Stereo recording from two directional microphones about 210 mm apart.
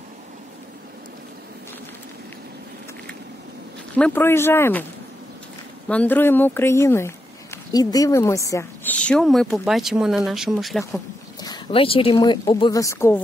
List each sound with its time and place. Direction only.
3.9 s speech: 10° left (ahead or behind)
5.9 s speech: 5° left (ahead or behind)
11.4 s speech: 25° left (ahead or behind)